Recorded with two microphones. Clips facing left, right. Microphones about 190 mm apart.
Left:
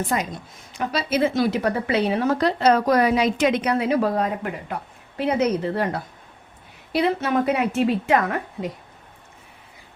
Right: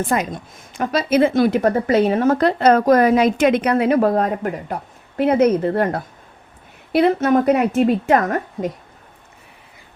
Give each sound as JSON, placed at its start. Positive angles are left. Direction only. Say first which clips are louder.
{"t": 0.1, "sound": "a woman's voice", "louder": "right 4 dB", "side_deg": -50}